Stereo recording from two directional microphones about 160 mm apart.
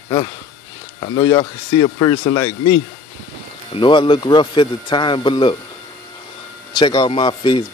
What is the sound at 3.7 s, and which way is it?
Speech, 30° left (ahead or behind).